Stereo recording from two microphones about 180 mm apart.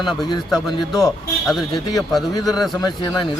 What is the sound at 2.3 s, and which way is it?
Speech, 20° left (ahead or behind).